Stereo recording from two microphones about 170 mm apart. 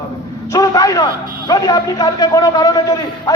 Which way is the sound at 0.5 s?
20° left (ahead or behind).